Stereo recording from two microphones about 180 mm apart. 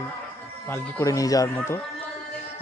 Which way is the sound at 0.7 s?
15° left (ahead or behind).